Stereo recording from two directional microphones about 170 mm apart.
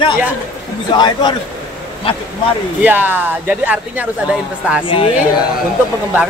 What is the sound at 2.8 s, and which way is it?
Speech, 10° right (ahead or behind).